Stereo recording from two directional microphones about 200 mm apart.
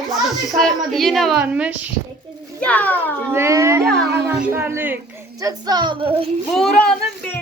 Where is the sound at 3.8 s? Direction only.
55° right (ahead or behind).